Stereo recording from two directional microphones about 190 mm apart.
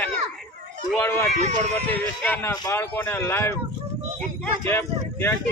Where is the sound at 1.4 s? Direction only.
35° right (ahead or behind).